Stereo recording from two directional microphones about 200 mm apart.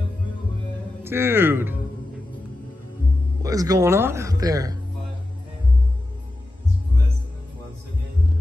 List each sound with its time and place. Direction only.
1.0 s speech: 10° right (ahead or behind)
3.4 s speech: 15° right (ahead or behind)